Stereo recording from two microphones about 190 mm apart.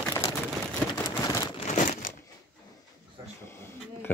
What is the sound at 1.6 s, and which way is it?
Crumpling, 40° left (ahead or behind).